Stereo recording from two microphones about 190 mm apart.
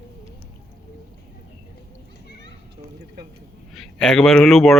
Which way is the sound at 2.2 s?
60° left (ahead or behind).